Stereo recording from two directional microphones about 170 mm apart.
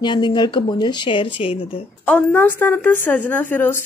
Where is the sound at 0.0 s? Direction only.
25° left (ahead or behind).